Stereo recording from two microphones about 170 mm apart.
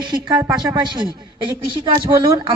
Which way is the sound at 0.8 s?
25° right (ahead or behind).